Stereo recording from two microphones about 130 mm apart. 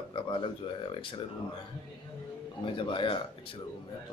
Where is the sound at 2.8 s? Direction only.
40° left (ahead or behind).